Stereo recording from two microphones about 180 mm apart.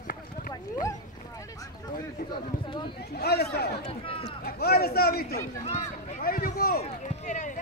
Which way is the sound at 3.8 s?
35° left (ahead or behind).